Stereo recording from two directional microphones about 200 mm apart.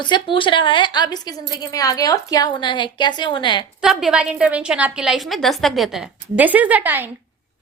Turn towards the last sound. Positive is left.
turn(degrees=-10)  # may be behind; listen again after turning